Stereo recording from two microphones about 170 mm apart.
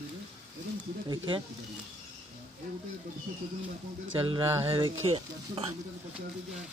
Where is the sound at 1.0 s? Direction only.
30° right (ahead or behind).